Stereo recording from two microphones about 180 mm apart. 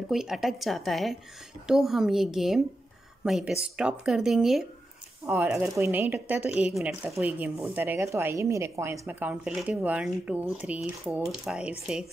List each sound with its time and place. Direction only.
0.1 s a woman's voice: centre (ahead or behind)